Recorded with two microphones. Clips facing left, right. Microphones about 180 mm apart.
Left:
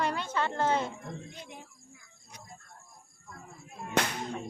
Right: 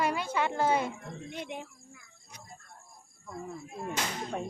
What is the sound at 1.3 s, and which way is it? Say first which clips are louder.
Speech: right 8 dB; 75° right (ahead or behind).